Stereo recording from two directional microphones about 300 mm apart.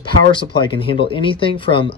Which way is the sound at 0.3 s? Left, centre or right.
Centre.